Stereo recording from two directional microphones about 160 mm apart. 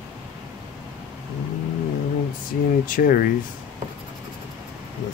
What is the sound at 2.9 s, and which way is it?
Speech, 60° left (ahead or behind).